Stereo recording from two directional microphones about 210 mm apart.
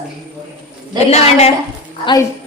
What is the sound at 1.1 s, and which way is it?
Speech, 30° left (ahead or behind).